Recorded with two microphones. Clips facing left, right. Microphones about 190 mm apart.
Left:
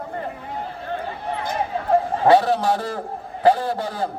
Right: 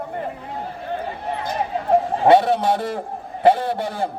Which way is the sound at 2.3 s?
25° right (ahead or behind).